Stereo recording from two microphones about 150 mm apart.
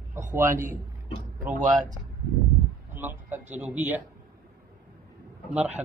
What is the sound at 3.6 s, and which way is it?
Speech, 10° right (ahead or behind).